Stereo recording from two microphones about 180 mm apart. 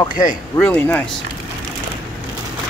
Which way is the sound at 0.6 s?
10° left (ahead or behind).